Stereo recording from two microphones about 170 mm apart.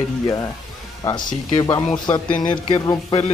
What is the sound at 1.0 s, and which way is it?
Speech, 20° left (ahead or behind).